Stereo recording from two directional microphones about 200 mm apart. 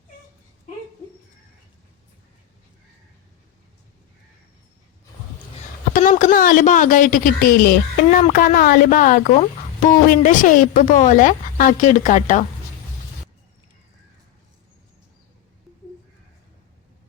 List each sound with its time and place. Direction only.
5.9 s a woman's voice: 45° left (ahead or behind)